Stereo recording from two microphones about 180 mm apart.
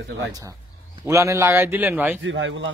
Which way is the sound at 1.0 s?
15° right (ahead or behind).